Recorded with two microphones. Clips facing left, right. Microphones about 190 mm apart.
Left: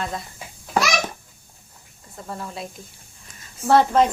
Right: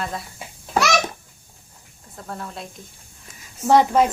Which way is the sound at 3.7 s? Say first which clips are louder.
Right 1 dB; 10° right (ahead or behind).